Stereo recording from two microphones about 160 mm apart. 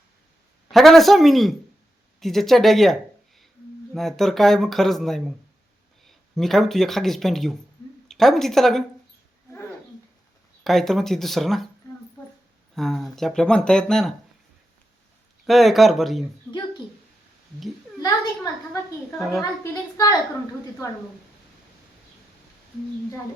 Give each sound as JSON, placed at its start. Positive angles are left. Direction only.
{"t": 0.7, "sound": "a woman's voice", "side_deg": 0}
{"t": 10.6, "sound": "speech", "side_deg": 0}
{"t": 12.7, "sound": "speech", "side_deg": 0}
{"t": 15.4, "sound": "speech", "side_deg": 0}
{"t": 16.5, "sound": "speech", "side_deg": 15}
{"t": 18.0, "sound": "a woman's voice", "side_deg": 20}